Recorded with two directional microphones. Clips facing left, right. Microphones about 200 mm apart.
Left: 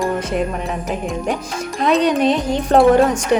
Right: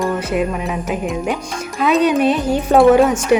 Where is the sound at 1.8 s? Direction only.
5° right (ahead or behind).